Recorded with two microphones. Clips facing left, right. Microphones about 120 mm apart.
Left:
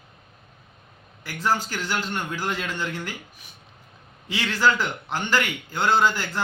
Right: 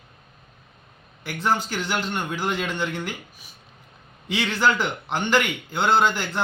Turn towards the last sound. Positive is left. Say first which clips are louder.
# right 1 dB
turn(degrees=-20)  # may be behind; listen again after turning